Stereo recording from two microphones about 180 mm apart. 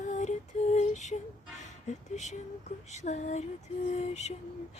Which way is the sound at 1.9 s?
40° left (ahead or behind).